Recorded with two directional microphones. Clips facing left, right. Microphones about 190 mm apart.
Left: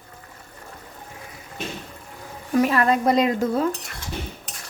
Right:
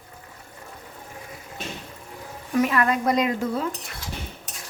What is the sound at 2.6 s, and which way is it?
Speech, 35° left (ahead or behind).